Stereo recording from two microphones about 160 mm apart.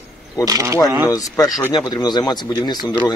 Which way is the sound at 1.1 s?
20° left (ahead or behind).